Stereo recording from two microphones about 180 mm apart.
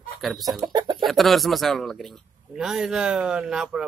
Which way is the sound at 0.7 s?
25° right (ahead or behind).